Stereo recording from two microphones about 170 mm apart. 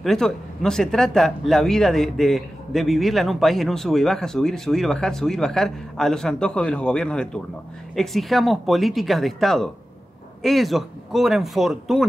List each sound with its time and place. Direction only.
0.0 s speech: 5° left (ahead or behind)